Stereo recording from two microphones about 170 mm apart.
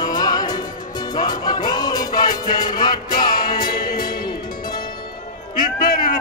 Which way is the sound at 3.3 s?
60° left (ahead or behind).